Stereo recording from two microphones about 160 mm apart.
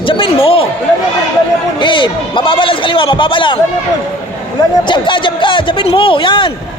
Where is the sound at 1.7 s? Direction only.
30° left (ahead or behind).